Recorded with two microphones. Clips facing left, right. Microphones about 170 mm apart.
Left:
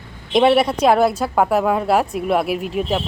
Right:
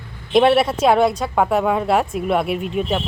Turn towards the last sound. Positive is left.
turn(degrees=0)  # may be behind; listen again after turning